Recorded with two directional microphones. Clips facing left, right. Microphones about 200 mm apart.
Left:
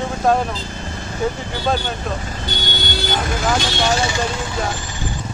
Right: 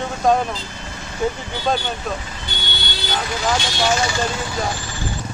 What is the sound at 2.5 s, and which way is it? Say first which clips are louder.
Music: left 6 dB; 45° left (ahead or behind).